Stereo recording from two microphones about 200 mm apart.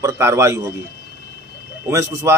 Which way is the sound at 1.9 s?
15° right (ahead or behind).